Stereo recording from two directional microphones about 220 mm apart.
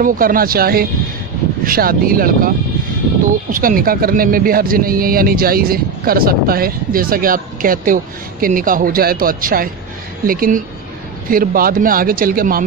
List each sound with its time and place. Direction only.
0.0 s speech: 40° right (ahead or behind)
3.5 s speech: 40° right (ahead or behind)